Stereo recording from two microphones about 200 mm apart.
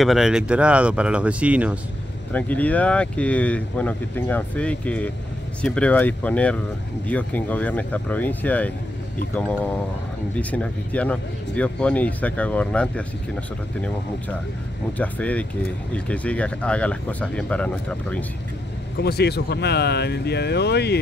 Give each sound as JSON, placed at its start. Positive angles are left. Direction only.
{"t": 0.0, "sound": "speech", "side_deg": 0}
{"t": 2.3, "sound": "speech", "side_deg": 5}
{"t": 15.0, "sound": "speech", "side_deg": 5}
{"t": 18.9, "sound": "speech", "side_deg": 55}